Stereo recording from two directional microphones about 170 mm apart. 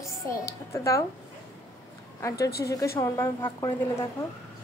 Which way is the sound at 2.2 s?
15° left (ahead or behind).